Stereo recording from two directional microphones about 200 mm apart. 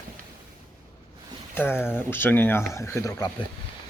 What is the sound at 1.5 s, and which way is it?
Speech, 10° left (ahead or behind).